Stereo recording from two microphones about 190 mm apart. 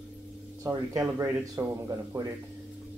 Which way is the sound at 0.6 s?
15° right (ahead or behind).